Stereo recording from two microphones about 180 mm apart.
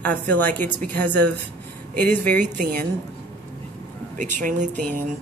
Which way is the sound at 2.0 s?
10° left (ahead or behind).